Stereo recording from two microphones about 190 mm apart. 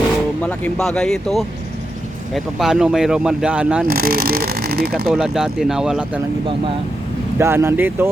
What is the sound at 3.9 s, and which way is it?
Speech, 50° right (ahead or behind).